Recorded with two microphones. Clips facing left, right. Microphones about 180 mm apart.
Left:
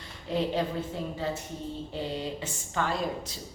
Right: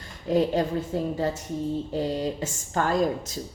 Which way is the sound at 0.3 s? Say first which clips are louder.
Right 6 dB; 45° right (ahead or behind).